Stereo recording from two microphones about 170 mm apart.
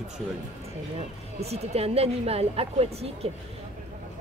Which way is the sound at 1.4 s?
40° right (ahead or behind).